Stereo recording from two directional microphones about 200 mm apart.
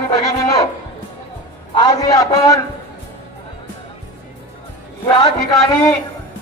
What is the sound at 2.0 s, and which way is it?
Speech, 20° left (ahead or behind).